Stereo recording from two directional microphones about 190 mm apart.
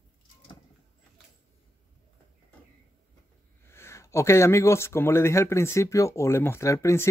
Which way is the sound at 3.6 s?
15° left (ahead or behind).